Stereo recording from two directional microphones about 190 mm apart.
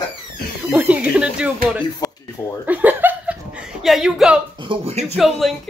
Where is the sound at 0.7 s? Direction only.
10° right (ahead or behind).